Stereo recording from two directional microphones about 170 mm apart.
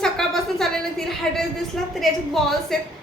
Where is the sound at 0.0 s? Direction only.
5° left (ahead or behind).